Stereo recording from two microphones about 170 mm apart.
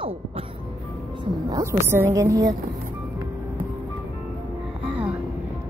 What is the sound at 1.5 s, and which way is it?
A woman's voice, 20° right (ahead or behind).